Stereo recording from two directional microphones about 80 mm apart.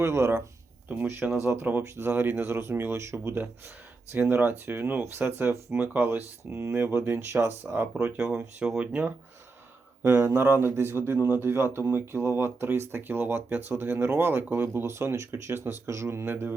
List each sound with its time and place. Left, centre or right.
0.0 s speech: right
5.7 s speech: centre
6.0 s speech: right
7.9 s speech: centre; by 16.6 s right